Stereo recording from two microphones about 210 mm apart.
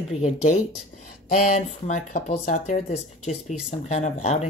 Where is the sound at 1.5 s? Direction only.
35° left (ahead or behind).